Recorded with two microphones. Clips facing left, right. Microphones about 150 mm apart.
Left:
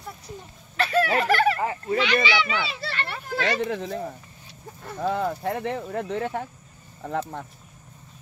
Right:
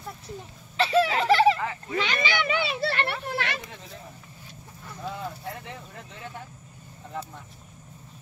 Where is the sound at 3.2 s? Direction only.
65° right (ahead or behind).